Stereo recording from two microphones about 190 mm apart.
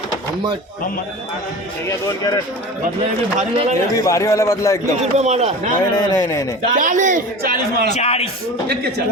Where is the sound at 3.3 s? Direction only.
35° right (ahead or behind).